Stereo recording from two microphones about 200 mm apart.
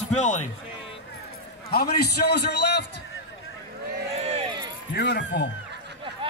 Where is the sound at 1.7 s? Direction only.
55° left (ahead or behind).